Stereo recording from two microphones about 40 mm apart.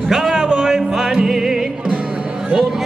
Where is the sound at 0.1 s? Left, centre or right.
Centre.